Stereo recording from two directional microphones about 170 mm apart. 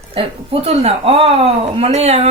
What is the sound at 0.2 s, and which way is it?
A woman's voice, 35° right (ahead or behind).